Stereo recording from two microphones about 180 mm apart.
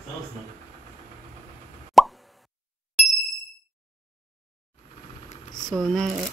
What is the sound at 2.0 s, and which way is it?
Plop, centre (ahead or behind).